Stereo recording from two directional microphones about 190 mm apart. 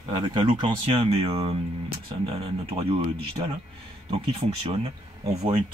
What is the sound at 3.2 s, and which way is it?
Speech, 30° right (ahead or behind).